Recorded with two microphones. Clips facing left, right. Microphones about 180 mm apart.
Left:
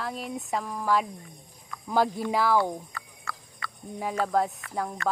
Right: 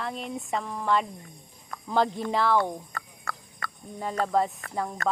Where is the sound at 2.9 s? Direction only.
45° right (ahead or behind).